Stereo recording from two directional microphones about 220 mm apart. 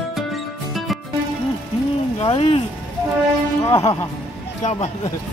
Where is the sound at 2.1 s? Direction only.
30° left (ahead or behind).